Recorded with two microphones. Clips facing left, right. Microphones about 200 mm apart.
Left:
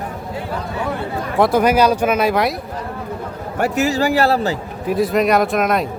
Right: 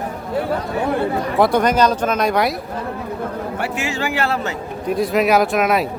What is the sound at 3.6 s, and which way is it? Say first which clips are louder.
Speech: left 9 dB; 40° left (ahead or behind).